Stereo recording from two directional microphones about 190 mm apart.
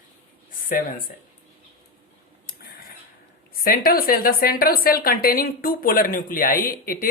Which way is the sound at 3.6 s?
50° left (ahead or behind).